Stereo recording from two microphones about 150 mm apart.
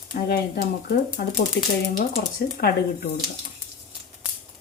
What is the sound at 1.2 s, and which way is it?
Speech, 90° left.